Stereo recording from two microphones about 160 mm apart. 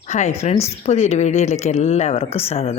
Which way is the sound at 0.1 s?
45° left (ahead or behind).